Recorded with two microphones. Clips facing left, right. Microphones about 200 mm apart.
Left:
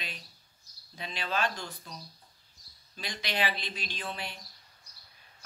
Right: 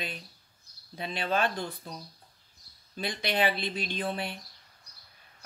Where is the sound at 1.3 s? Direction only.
55° right (ahead or behind).